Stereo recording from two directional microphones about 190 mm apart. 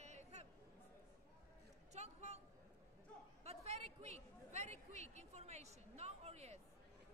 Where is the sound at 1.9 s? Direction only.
35° right (ahead or behind).